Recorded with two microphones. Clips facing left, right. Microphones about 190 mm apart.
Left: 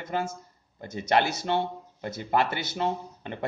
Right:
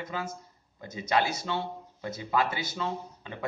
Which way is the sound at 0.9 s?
70° left (ahead or behind).